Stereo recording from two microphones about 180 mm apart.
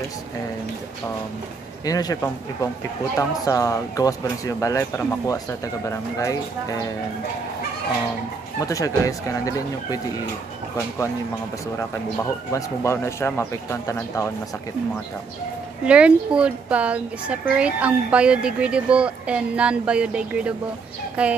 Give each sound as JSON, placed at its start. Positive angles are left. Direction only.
{"t": 1.9, "sound": "speech", "side_deg": 20}
{"t": 8.5, "sound": "speech", "side_deg": 20}
{"t": 12.5, "sound": "speech", "side_deg": 15}
{"t": 15.8, "sound": "speech", "side_deg": -5}